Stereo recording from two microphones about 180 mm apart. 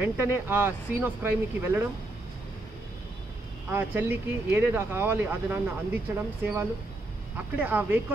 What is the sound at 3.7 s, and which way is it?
Speech, 10° right (ahead or behind).